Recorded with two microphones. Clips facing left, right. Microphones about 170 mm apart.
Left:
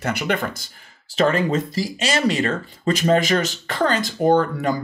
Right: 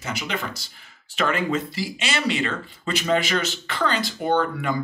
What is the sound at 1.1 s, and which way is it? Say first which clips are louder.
Speech: left 5 dB; 35° left (ahead or behind).